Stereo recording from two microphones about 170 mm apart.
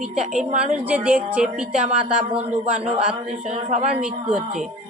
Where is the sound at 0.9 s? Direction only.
10° right (ahead or behind).